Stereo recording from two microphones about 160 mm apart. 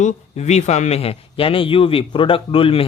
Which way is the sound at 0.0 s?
45° left (ahead or behind).